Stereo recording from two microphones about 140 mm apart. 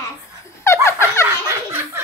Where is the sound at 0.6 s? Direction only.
20° left (ahead or behind).